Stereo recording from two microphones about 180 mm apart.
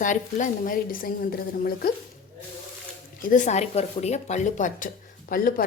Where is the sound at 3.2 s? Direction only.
45° left (ahead or behind).